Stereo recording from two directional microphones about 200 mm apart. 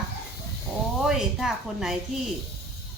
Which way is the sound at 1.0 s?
Centre (ahead or behind).